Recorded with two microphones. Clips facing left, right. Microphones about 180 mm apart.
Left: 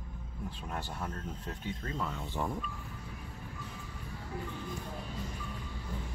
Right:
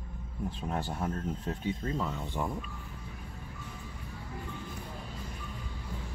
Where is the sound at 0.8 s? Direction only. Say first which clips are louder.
Right 6 dB; 15° right (ahead or behind).